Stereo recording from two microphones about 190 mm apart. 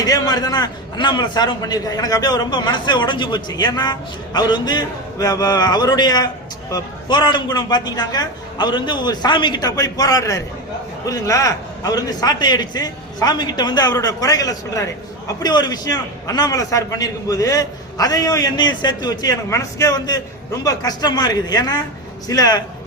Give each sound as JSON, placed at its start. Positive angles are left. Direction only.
{"t": 0.0, "sound": "a man's voice", "side_deg": 20}